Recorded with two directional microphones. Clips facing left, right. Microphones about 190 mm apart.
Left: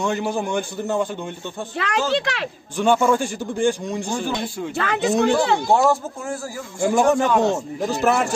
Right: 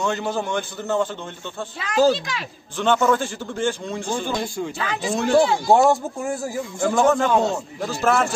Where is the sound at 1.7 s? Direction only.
65° left (ahead or behind).